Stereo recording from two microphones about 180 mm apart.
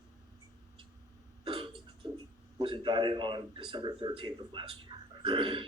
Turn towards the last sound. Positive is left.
turn(degrees=-30)  # may be behind; listen again after turning